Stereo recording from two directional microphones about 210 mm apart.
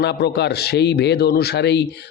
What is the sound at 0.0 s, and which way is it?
A man's voice, 55° left (ahead or behind).